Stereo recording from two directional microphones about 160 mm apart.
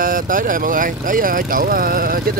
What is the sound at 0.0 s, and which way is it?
Speech, 60° right (ahead or behind).